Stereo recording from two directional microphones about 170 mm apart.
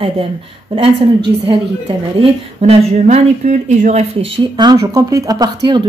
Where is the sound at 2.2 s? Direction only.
35° right (ahead or behind).